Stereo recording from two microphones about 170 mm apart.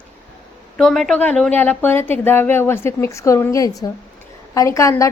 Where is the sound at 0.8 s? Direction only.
Centre (ahead or behind); by 5.0 s 20° left (ahead or behind).